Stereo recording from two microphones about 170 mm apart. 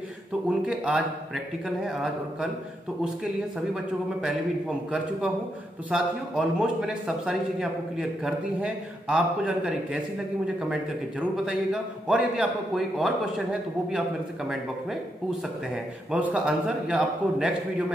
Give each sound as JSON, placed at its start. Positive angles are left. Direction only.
{"t": 0.5, "sound": "a man's voice", "side_deg": -5}
{"t": 4.2, "sound": "a man's voice", "side_deg": 0}
{"t": 15.7, "sound": "a man's voice", "side_deg": -10}